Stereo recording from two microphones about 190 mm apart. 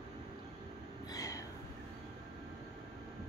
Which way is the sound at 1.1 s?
15° left (ahead or behind).